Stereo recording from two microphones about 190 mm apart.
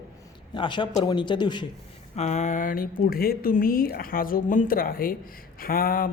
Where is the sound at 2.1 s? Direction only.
35° left (ahead or behind).